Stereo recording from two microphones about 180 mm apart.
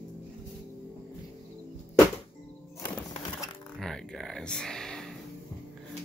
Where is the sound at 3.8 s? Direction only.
Centre (ahead or behind).